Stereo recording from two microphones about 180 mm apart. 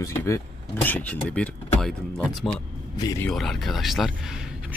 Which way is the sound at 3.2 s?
Centre (ahead or behind).